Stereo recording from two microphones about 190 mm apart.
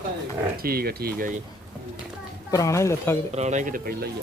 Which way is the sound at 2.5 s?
15° left (ahead or behind).